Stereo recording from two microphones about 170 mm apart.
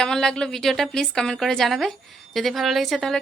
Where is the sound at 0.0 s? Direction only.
5° left (ahead or behind).